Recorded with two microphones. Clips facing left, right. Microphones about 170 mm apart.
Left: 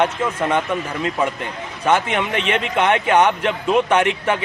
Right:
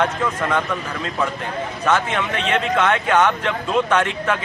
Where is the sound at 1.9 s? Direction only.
10° left (ahead or behind).